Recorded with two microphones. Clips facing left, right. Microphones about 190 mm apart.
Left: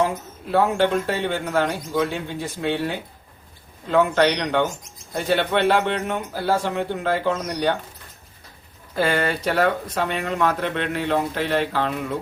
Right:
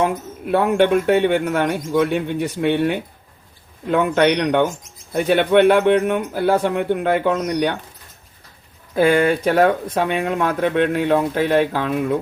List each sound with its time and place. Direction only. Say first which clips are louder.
0.0 s speech: right 3 dB; 60° right (ahead or behind)
9.0 s speech: right 7 dB; 55° right (ahead or behind)